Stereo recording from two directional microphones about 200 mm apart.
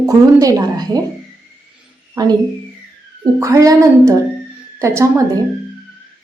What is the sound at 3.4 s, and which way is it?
A woman's voice, 15° right (ahead or behind).